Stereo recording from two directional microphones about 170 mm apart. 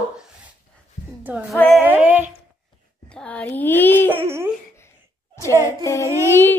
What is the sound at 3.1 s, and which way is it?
Speech, 5° left (ahead or behind).